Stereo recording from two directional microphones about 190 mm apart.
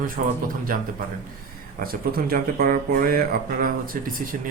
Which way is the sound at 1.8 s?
50° right (ahead or behind).